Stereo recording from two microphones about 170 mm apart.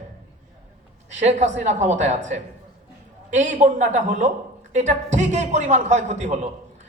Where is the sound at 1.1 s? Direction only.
40° right (ahead or behind).